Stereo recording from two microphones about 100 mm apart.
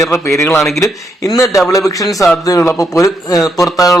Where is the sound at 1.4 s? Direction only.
35° left (ahead or behind).